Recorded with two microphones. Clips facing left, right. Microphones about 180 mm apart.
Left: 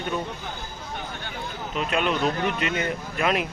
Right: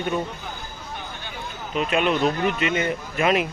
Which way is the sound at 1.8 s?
5° right (ahead or behind).